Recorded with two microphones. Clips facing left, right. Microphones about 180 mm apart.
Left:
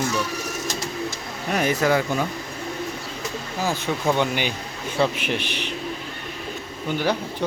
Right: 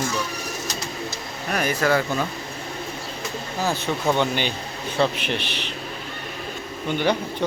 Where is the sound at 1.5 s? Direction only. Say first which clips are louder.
Left 1 dB; 20° left (ahead or behind).